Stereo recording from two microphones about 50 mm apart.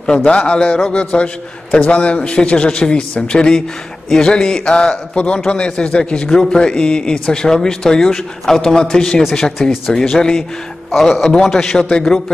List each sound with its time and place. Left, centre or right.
0.0 s a man's voice: centre
9.6 s a man's voice: centre